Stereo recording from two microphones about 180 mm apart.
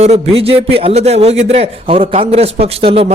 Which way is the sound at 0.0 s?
35° right (ahead or behind).